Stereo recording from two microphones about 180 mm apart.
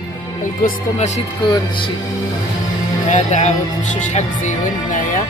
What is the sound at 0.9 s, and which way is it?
Speech, 40° left (ahead or behind).